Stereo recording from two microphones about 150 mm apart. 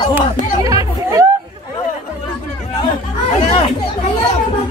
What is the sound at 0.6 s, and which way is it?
Chatter, 25° right (ahead or behind).